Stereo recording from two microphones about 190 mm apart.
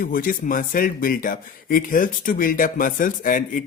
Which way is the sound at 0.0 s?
45° left (ahead or behind).